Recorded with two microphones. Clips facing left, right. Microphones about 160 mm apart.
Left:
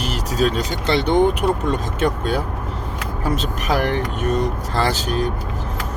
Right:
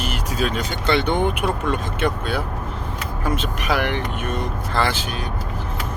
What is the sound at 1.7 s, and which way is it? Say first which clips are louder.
Speech: left 2 dB; 40° left (ahead or behind).